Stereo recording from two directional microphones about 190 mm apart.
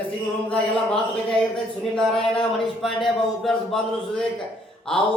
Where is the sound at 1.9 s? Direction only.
5° left (ahead or behind).